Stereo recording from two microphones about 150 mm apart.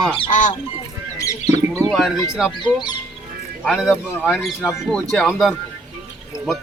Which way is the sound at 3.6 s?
5° right (ahead or behind).